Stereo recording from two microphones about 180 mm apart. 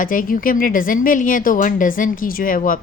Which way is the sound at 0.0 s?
50° left (ahead or behind).